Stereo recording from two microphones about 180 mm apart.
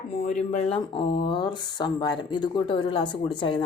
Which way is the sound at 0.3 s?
35° left (ahead or behind).